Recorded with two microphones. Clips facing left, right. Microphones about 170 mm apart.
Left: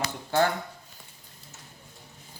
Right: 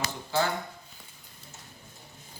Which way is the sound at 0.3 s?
55° left (ahead or behind).